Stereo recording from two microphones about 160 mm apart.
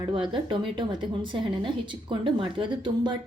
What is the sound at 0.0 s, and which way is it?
A woman's voice, 30° right (ahead or behind).